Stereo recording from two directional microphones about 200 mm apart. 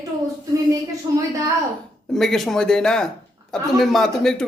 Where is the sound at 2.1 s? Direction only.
Centre (ahead or behind).